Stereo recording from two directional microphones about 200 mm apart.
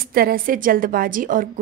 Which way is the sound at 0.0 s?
50° right (ahead or behind).